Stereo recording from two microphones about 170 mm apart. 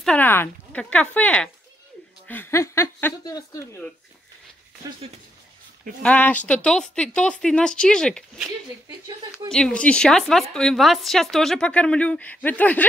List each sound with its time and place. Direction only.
0.0 s speech: 10° left (ahead or behind)
6.0 s a woman's voice: 10° left (ahead or behind)
8.8 s speech: 20° right (ahead or behind)
9.5 s a woman's voice: 5° left (ahead or behind)